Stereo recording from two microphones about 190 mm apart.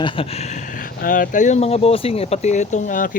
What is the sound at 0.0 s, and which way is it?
Speech, 25° left (ahead or behind).